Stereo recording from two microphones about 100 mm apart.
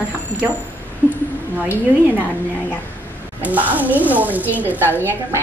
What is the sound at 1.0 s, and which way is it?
Speech, 20° left (ahead or behind).